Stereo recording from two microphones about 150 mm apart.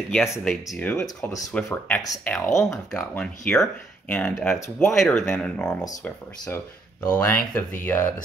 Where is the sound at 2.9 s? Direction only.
10° left (ahead or behind).